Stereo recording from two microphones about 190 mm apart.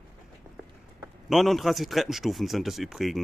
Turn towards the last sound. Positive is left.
turn(degrees=0)  # may be behind; listen again after turning